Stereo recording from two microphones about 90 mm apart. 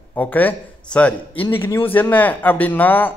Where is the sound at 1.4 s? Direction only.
25° left (ahead or behind).